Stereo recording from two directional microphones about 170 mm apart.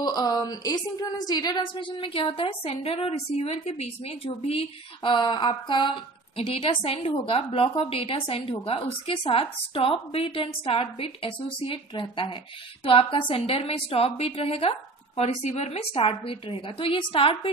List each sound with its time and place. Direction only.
0.0 s a woman's voice: 25° left (ahead or behind)